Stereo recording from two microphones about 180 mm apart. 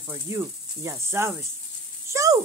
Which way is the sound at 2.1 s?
15° right (ahead or behind).